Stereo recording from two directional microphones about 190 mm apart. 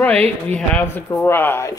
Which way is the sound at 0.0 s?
10° left (ahead or behind).